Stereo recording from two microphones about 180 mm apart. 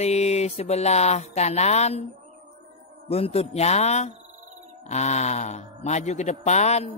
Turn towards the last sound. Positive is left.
turn(degrees=40)  # may be behind; listen again after turning